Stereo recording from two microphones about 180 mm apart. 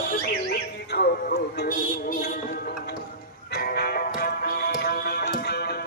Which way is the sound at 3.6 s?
60° left (ahead or behind).